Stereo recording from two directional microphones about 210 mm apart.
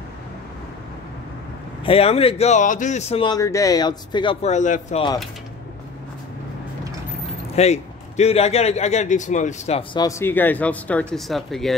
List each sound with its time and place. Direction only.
1.9 s speech: 30° left (ahead or behind)
7.5 s a man's voice: 30° left (ahead or behind)
10.0 s speech: 10° left (ahead or behind)